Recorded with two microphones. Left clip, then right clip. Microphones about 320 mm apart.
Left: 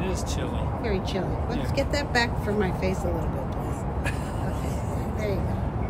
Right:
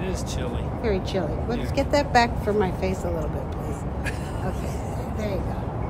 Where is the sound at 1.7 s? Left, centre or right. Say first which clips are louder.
Right 6 dB; centre.